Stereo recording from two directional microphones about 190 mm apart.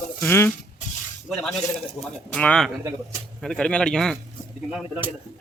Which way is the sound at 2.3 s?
5° left (ahead or behind).